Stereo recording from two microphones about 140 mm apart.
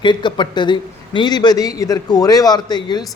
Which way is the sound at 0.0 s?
35° left (ahead or behind).